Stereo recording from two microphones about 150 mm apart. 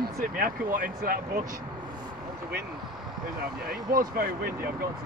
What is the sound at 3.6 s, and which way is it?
Speech, 80° right.